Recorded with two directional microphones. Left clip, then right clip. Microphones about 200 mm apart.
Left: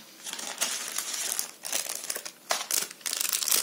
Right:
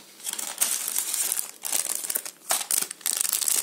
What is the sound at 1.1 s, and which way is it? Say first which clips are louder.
Crumpling: right 1 dB; 20° right (ahead or behind).